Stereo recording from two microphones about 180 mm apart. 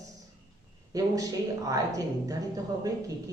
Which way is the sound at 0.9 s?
20° right (ahead or behind).